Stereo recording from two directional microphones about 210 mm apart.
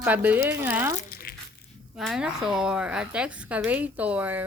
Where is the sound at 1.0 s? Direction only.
45° left (ahead or behind).